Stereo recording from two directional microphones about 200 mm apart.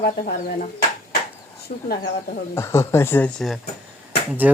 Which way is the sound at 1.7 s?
45° left (ahead or behind).